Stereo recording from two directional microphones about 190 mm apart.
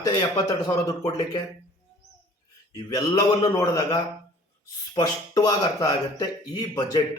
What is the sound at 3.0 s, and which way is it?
A man's voice, 20° left (ahead or behind).